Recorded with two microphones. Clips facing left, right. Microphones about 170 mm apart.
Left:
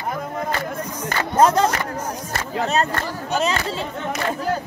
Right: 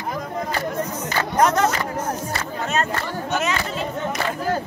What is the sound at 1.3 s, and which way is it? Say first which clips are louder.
Speech: left 2 dB; 30° left (ahead or behind).